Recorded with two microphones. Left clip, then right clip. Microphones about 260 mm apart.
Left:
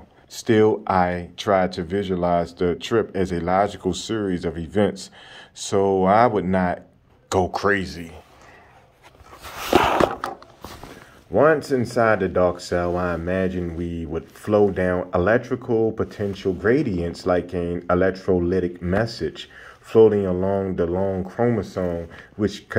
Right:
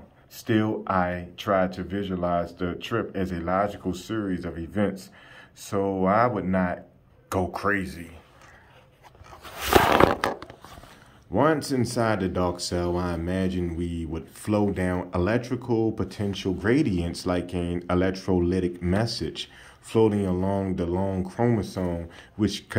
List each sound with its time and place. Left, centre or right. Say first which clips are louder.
0.4 s speech: left 8 dB; left
11.3 s speech: left 6 dB; centre